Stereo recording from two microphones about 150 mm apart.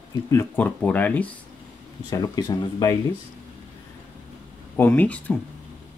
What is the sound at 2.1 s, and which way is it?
Speech, 25° left (ahead or behind).